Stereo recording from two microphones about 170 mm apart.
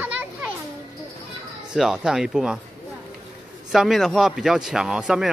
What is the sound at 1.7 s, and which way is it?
Speech, 5° right (ahead or behind).